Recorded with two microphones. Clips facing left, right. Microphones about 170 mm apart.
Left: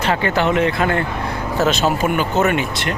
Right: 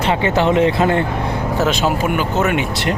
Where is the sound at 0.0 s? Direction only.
25° right (ahead or behind).